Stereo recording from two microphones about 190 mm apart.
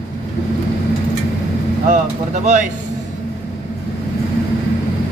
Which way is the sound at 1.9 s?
40° right (ahead or behind).